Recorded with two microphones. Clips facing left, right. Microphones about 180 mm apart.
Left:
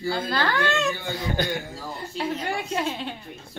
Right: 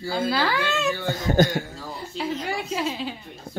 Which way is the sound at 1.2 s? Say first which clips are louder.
Right 10 dB; 45° right (ahead or behind).